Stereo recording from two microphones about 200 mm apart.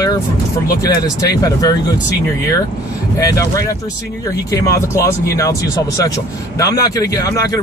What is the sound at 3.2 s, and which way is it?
A man's voice, 15° left (ahead or behind).